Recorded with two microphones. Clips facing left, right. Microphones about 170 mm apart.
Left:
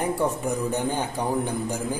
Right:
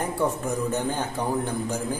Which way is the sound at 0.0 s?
10° left (ahead or behind).